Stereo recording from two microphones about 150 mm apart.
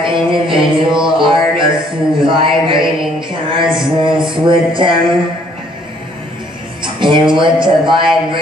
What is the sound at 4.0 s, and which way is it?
Speech, 35° right (ahead or behind).